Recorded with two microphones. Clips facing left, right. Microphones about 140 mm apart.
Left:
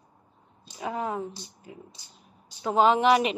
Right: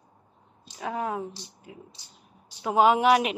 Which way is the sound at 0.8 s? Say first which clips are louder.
Even; centre (ahead or behind).